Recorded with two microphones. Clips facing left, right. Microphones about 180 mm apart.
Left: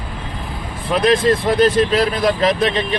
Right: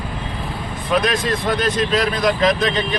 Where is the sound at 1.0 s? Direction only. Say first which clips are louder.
Left 9 dB; 30° left (ahead or behind).